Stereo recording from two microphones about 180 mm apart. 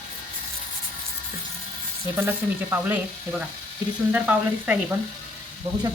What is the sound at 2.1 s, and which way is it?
Speech, 10° right (ahead or behind).